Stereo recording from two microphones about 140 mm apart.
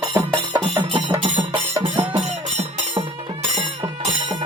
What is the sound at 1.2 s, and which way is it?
Music, 45° right (ahead or behind).